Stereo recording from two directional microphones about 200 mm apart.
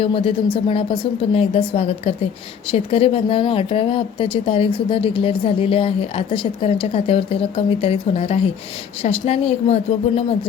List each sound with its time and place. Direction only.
0.0 s speech: 25° left (ahead or behind)